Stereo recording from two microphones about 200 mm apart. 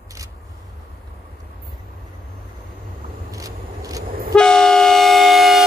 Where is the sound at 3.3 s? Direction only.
15° right (ahead or behind).